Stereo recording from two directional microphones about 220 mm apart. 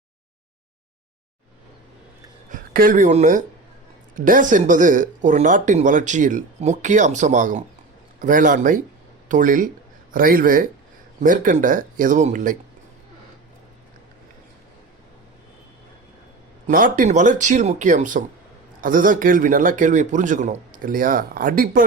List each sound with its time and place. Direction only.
2.5 s speech: 40° right (ahead or behind)
16.6 s speech: 40° right (ahead or behind)